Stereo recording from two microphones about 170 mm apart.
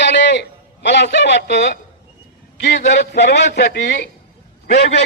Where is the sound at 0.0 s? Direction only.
90° left.